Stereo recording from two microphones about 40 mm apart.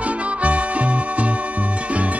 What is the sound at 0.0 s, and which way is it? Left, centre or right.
Music, right.